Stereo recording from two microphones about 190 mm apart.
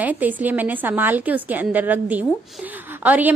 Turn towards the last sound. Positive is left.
turn(degrees=-10)  # may be behind; listen again after turning